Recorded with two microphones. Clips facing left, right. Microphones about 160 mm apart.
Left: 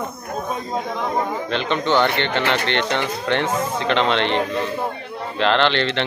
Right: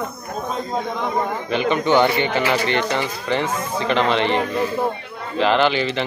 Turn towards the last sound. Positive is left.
turn(degrees=-5)  # may be behind; listen again after turning